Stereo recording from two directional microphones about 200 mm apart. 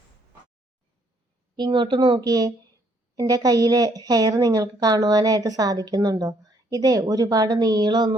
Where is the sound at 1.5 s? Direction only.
25° right (ahead or behind).